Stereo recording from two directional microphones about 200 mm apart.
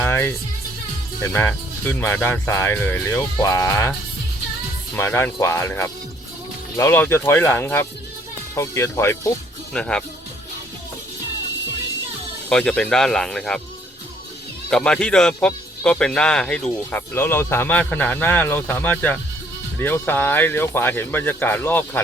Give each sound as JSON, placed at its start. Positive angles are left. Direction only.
{"t": 0.0, "sound": "music", "side_deg": 10}
{"t": 1.2, "sound": "speech", "side_deg": 10}
{"t": 4.9, "sound": "speech", "side_deg": 15}
{"t": 12.5, "sound": "speech", "side_deg": 5}
{"t": 14.7, "sound": "speech", "side_deg": 5}